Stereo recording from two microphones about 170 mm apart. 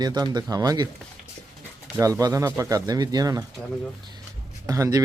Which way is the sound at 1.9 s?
20° right (ahead or behind).